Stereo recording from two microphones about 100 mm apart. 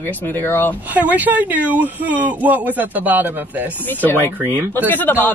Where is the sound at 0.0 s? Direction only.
25° left (ahead or behind).